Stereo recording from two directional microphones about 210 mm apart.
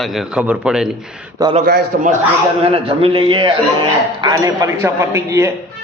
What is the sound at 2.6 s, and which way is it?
A man's voice, 25° right (ahead or behind).